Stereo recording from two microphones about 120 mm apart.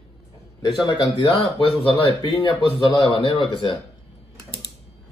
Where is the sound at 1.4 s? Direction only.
50° left (ahead or behind).